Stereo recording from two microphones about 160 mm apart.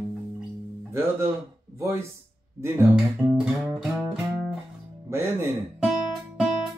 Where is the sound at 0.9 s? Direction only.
15° right (ahead or behind).